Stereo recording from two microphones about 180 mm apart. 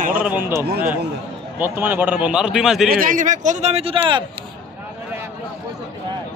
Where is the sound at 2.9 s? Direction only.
50° right (ahead or behind); by 4.2 s 30° right (ahead or behind).